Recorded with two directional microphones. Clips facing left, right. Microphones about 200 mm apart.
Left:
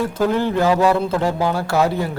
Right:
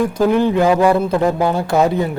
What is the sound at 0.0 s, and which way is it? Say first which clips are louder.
Speech: right 4 dB; 15° right (ahead or behind).